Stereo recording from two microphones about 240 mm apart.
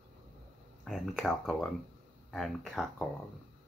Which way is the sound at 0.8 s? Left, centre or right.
Centre.